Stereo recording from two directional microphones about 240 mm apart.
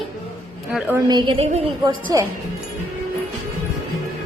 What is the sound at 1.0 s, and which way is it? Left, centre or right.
Speech, centre.